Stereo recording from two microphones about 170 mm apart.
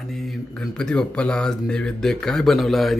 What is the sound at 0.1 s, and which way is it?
Speech, centre (ahead or behind).